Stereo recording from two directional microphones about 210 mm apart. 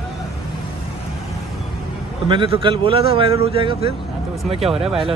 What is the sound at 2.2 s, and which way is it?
A man's voice, 25° right (ahead or behind).